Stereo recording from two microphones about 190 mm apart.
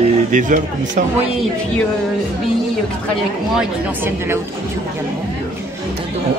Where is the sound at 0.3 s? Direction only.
40° right (ahead or behind).